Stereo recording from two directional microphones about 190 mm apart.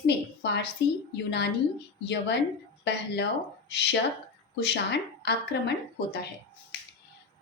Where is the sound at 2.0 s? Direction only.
65° left (ahead or behind).